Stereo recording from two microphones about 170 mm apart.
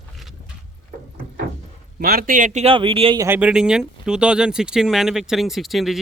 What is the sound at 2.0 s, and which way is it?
Speech, 60° right (ahead or behind).